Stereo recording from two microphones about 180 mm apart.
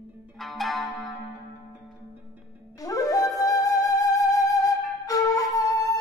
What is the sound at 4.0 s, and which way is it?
Music, 20° left (ahead or behind).